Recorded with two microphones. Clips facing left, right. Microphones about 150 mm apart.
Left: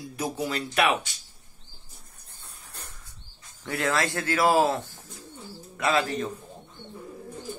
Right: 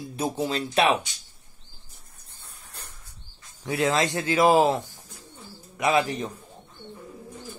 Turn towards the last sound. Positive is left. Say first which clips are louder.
# right 2 dB
turn(degrees=-20)  # may be behind; listen again after turning